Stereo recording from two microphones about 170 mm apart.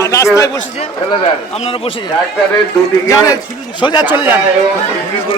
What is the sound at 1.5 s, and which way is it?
Speech, 35° left (ahead or behind).